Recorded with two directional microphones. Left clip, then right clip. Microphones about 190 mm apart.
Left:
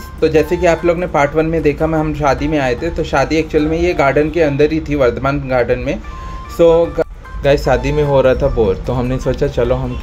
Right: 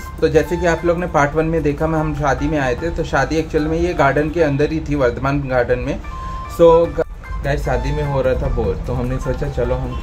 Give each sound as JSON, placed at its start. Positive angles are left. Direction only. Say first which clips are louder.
{"t": 0.2, "sound": "a man's voice", "louder": "left 3 dB", "side_deg": 5}
{"t": 7.4, "sound": "speech", "louder": "left 8 dB", "side_deg": 25}